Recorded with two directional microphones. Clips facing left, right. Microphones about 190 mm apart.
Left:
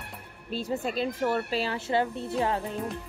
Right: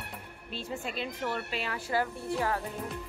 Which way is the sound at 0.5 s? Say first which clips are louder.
Left 7 dB; 40° left (ahead or behind).